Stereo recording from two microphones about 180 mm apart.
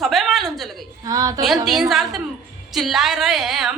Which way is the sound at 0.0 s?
Centre (ahead or behind).